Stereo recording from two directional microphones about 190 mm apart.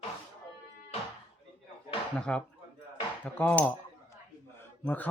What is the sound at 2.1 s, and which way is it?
A man's voice, 5° left (ahead or behind).